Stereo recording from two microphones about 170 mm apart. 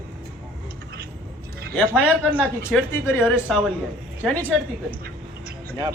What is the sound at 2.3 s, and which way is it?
Speech, 5° right (ahead or behind).